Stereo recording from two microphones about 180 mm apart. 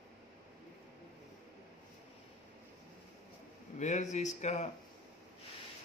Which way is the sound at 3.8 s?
40° left (ahead or behind).